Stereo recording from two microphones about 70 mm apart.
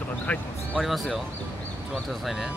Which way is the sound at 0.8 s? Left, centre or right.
Centre.